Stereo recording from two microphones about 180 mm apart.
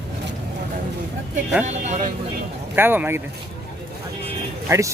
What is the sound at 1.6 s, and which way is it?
Speech, 40° right (ahead or behind).